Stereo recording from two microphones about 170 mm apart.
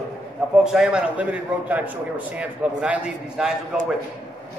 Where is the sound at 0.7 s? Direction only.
5° right (ahead or behind).